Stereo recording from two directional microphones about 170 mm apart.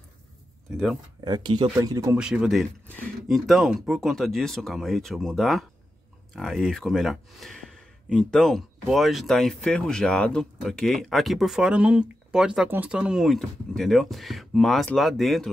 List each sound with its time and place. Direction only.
0.7 s speech: centre (ahead or behind)
1.2 s speech: 25° right (ahead or behind)
2.1 s speech: 5° right (ahead or behind)